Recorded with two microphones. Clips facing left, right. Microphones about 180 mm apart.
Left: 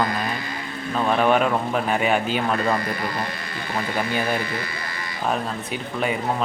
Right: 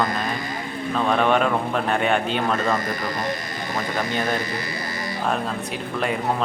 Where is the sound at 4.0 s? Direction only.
10° left (ahead or behind).